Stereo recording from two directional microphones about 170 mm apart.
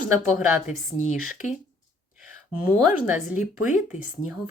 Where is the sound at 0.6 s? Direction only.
50° left (ahead or behind).